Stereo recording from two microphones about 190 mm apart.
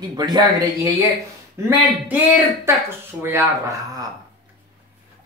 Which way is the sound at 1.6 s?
15° right (ahead or behind).